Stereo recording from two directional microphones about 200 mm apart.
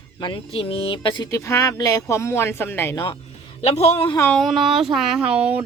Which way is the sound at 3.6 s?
30° left (ahead or behind).